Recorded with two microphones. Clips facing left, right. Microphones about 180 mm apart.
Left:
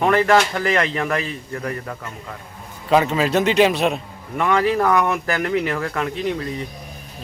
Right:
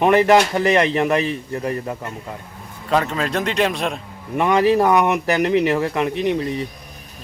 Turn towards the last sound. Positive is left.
turn(degrees=-20)  # may be behind; listen again after turning